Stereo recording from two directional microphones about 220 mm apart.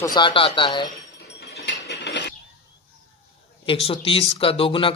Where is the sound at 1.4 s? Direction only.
50° left (ahead or behind).